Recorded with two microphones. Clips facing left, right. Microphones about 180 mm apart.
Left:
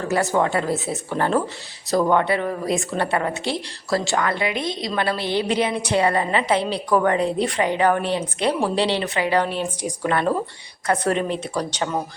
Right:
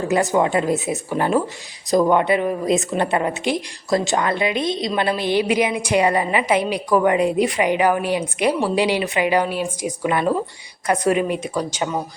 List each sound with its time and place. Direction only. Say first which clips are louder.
0.1 s a woman's voice: right 2 dB; 15° right (ahead or behind)